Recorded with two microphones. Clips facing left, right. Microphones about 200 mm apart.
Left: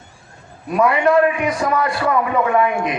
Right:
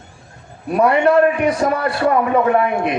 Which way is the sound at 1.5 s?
35° right (ahead or behind).